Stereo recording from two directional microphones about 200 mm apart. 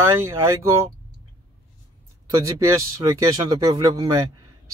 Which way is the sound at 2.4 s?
15° right (ahead or behind).